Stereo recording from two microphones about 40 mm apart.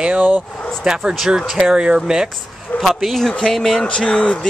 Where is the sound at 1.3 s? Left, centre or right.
Right.